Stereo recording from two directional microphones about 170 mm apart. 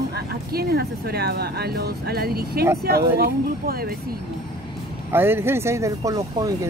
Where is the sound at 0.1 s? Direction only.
65° right (ahead or behind).